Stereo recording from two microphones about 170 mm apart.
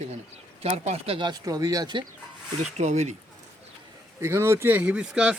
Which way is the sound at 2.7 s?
40° right (ahead or behind).